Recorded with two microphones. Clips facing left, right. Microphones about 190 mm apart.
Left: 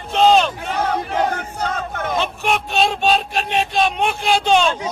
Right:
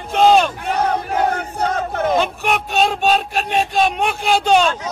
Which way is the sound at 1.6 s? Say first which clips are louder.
Right 5 dB; 35° right (ahead or behind).